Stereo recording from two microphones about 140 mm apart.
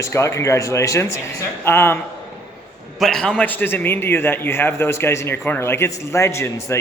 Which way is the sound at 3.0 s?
5° left (ahead or behind).